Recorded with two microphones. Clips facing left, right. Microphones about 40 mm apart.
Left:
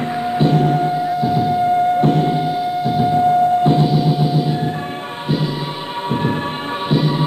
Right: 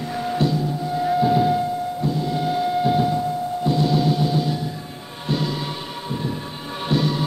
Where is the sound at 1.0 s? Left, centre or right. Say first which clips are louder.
Left 1 dB; centre.